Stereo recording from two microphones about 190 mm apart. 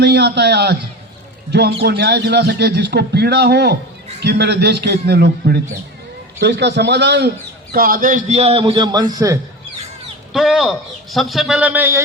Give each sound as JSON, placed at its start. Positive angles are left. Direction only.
{"t": 0.0, "sound": "a man's voice", "side_deg": -60}
{"t": 7.7, "sound": "a man's voice", "side_deg": -50}
{"t": 10.3, "sound": "speech", "side_deg": 0}